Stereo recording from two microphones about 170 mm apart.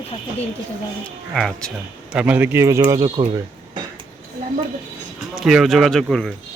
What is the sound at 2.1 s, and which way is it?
A man's voice, 10° right (ahead or behind).